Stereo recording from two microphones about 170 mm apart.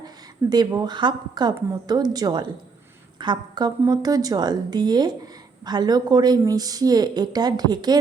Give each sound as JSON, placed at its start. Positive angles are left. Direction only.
{"t": 0.5, "sound": "a woman's voice", "side_deg": -25}